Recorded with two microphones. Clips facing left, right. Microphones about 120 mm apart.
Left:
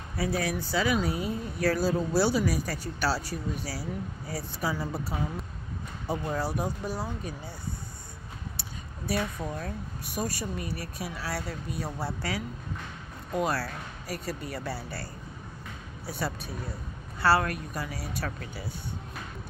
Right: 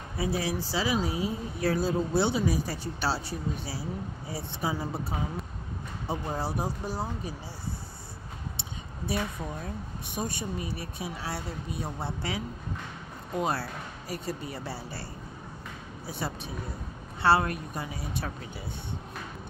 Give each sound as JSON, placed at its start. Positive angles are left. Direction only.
{"t": 0.4, "sound": "speech", "side_deg": -25}
{"t": 8.5, "sound": "a sound", "side_deg": -25}
{"t": 10.1, "sound": "speech", "side_deg": -25}
{"t": 16.2, "sound": "speech", "side_deg": -25}